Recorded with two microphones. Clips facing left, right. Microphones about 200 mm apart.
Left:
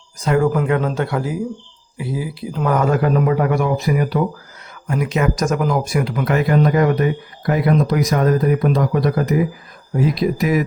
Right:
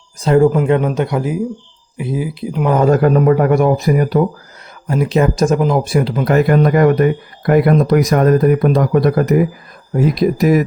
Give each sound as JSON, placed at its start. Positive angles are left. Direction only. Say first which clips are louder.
{"t": 0.2, "sound": "speech", "louder": "right 5 dB", "side_deg": -30}
{"t": 2.7, "sound": "a man's voice", "louder": "right 6 dB", "side_deg": -35}
{"t": 3.0, "sound": "speech", "louder": "right 5 dB", "side_deg": -45}
{"t": 4.9, "sound": "speech", "louder": "right 5 dB", "side_deg": -30}
{"t": 6.3, "sound": "speech", "louder": "right 4 dB", "side_deg": -50}
{"t": 9.9, "sound": "speech", "louder": "right 4 dB", "side_deg": -45}